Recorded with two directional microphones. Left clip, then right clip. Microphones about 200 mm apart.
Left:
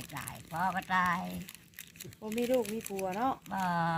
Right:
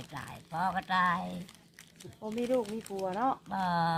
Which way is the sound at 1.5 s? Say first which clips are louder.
Left 4 dB; 50° left (ahead or behind).